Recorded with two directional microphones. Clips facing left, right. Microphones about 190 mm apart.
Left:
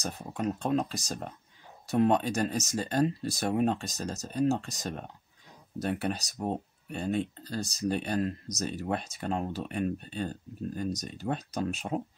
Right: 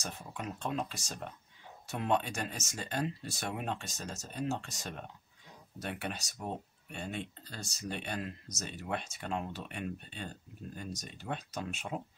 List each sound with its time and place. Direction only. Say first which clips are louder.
0.0 s speech: left 9 dB; 40° left (ahead or behind)